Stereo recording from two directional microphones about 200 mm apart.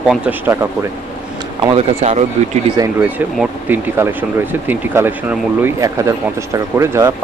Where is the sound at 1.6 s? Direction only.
30° right (ahead or behind).